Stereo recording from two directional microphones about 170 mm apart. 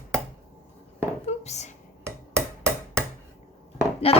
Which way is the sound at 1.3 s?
40° left (ahead or behind).